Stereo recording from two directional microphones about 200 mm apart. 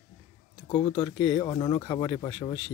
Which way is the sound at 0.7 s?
25° left (ahead or behind).